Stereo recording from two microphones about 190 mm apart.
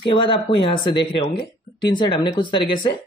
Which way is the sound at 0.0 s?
25° left (ahead or behind).